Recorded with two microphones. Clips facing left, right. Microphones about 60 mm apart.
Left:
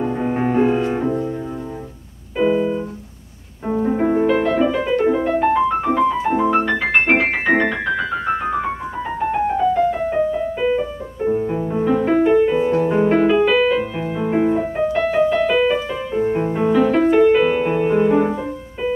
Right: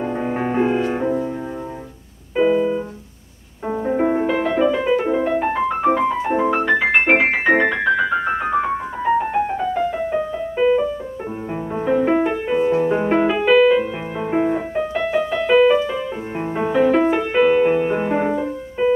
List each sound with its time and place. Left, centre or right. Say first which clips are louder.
0.0 s music: left 2 dB; centre
2.3 s music: right 1 dB; centre
5.9 s music: even; centre
6.5 s music: even; centre
11.4 s music: left 3 dB; centre